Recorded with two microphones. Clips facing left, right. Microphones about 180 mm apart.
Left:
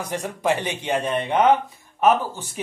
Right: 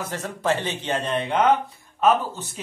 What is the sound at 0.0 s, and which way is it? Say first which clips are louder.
Speech: left 2 dB; 15° left (ahead or behind).